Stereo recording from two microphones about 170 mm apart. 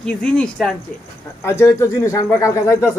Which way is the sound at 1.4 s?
15° left (ahead or behind).